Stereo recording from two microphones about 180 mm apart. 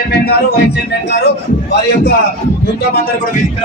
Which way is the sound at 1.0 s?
65° left (ahead or behind).